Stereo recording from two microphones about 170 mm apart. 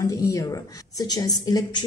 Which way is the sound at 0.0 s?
20° left (ahead or behind).